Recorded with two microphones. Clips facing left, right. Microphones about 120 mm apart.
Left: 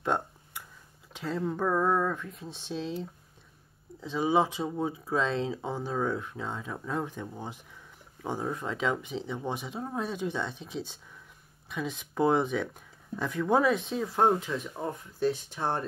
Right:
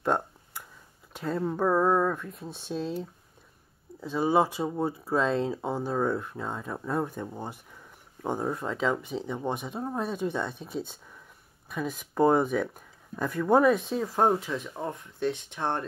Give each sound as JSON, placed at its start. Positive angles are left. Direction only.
{"t": 0.0, "sound": "a sound", "side_deg": -5}
{"t": 1.1, "sound": "speech", "side_deg": -10}
{"t": 4.0, "sound": "speech", "side_deg": -5}
{"t": 9.5, "sound": "speech", "side_deg": -50}
{"t": 9.8, "sound": "speech", "side_deg": -5}
{"t": 11.7, "sound": "speech", "side_deg": -5}